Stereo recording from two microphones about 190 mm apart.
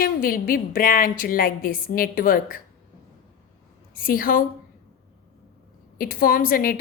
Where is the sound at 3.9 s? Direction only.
50° left (ahead or behind).